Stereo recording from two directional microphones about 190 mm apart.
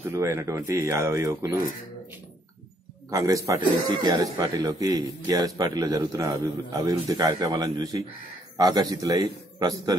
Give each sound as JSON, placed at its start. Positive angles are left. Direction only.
{"t": 0.1, "sound": "speech", "side_deg": -15}
{"t": 3.1, "sound": "speech", "side_deg": -15}